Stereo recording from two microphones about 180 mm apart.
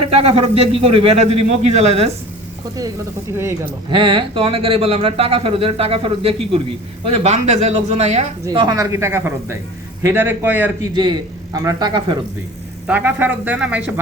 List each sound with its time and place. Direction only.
0.0 s speech: 35° right (ahead or behind)
3.8 s speech: 30° right (ahead or behind)
8.4 s speech: 20° right (ahead or behind)
10.9 s a man's voice: 25° right (ahead or behind)
12.9 s speech: 10° right (ahead or behind)